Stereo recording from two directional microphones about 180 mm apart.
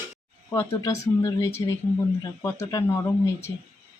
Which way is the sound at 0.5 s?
20° left (ahead or behind).